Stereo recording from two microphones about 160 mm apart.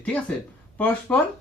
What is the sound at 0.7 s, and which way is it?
Speech, 10° left (ahead or behind).